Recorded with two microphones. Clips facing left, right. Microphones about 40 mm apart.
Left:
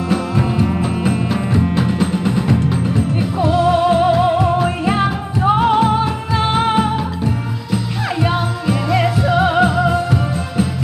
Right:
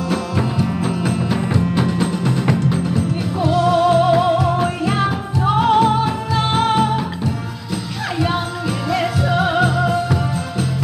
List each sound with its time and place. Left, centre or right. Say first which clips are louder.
0.1 s music: left 4 dB; centre